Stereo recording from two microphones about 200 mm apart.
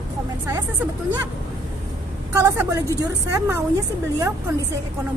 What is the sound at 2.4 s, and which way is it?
A woman's voice, 15° right (ahead or behind).